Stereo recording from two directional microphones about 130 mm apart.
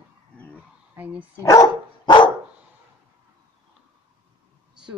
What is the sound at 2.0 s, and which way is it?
Dog, 35° left (ahead or behind).